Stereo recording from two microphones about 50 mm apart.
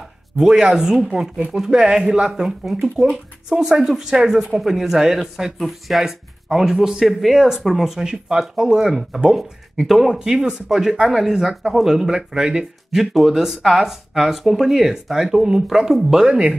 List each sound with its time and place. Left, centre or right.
0.4 s speech: centre
13.0 s speech: centre